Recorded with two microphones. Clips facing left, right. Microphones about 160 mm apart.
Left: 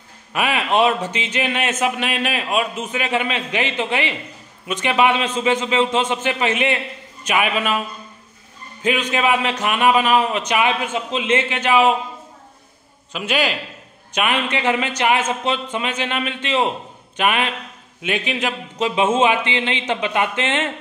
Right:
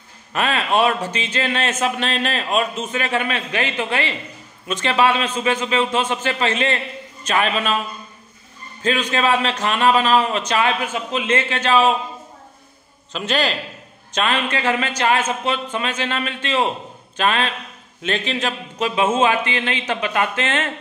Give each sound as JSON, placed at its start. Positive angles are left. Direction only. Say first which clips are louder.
{"t": 0.3, "sound": "a man's voice", "louder": "even", "side_deg": 15}
{"t": 8.8, "sound": "a man's voice", "louder": "even", "side_deg": 15}
{"t": 13.1, "sound": "a man's voice", "louder": "even", "side_deg": 10}